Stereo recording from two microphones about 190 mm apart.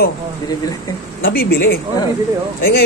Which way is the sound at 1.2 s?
55° left (ahead or behind).